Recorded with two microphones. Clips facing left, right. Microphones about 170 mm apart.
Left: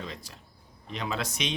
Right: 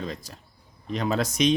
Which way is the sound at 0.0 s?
40° right (ahead or behind).